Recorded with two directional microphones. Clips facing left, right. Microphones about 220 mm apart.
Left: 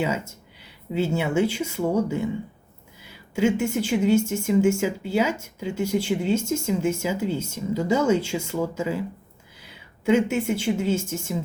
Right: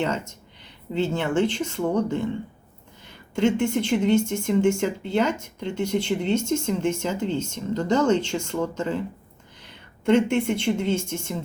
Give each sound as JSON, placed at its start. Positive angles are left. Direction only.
{"t": 0.0, "sound": "speech", "side_deg": 5}